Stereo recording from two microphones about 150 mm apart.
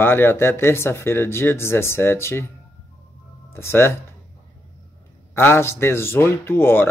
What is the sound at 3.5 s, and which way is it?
Speech, 15° left (ahead or behind).